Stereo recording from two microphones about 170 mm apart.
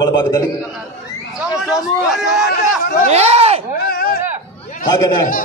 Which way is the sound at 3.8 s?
60° left (ahead or behind).